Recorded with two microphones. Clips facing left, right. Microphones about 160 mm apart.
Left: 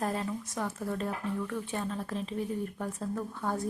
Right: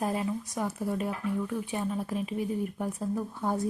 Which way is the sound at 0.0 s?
15° right (ahead or behind).